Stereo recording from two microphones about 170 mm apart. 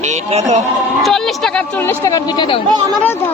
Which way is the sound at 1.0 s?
Centre (ahead or behind).